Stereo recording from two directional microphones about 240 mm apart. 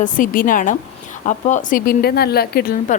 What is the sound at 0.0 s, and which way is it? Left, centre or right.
A woman's voice, left.